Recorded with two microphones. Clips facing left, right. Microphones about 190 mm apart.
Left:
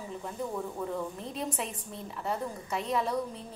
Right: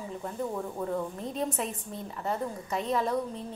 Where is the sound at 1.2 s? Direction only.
40° right (ahead or behind).